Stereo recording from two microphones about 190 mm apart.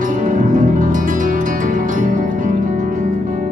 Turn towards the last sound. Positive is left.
turn(degrees=-40)  # may be behind; listen again after turning